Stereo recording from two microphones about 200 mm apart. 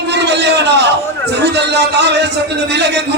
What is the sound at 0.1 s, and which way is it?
A man's voice, 60° right (ahead or behind).